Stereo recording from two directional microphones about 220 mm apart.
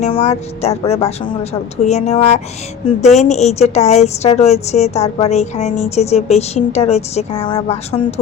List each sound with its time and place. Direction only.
0.0 s a woman's voice: 30° left (ahead or behind)